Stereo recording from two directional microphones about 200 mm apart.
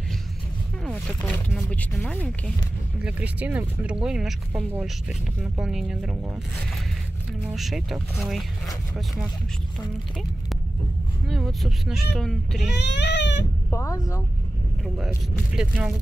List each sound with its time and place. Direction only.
0.8 s speech: centre (ahead or behind)
3.0 s speech: 5° right (ahead or behind)
7.4 s speech: centre (ahead or behind)
11.2 s speech: centre (ahead or behind)
12.7 s speech: 60° left (ahead or behind)
13.7 s speech: 15° left (ahead or behind)
15.0 s speech: 5° right (ahead or behind)